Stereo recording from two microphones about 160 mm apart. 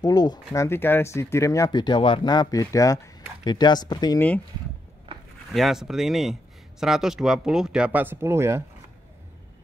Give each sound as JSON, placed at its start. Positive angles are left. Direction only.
{"t": 0.0, "sound": "speech", "side_deg": 25}
{"t": 0.7, "sound": "speech", "side_deg": 15}
{"t": 5.1, "sound": "a sound", "side_deg": -35}
{"t": 5.5, "sound": "speech", "side_deg": 0}